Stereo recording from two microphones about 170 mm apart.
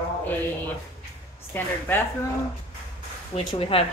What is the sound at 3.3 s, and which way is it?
Speech, 35° left (ahead or behind).